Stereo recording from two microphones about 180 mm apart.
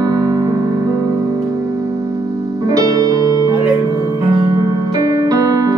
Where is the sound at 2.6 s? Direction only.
20° right (ahead or behind).